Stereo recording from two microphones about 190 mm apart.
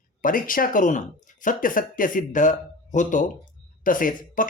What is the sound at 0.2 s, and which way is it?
Speech, 45° left (ahead or behind).